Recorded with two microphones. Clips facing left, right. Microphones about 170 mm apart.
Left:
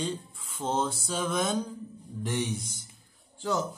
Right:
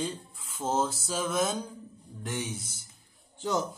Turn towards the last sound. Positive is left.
turn(degrees=-20)  # may be behind; listen again after turning